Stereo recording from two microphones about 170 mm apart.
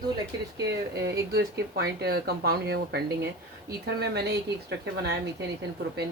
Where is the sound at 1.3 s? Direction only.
65° right (ahead or behind).